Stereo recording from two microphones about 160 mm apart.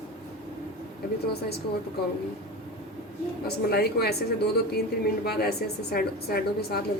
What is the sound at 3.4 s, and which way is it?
A woman's voice, 80° left.